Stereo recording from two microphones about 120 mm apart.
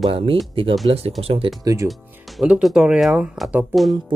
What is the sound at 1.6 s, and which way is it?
Speech, 30° right (ahead or behind).